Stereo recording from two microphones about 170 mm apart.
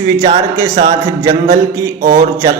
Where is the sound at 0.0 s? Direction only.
20° right (ahead or behind).